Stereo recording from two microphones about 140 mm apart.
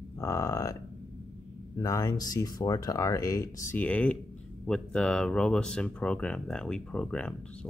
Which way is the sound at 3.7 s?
10° left (ahead or behind).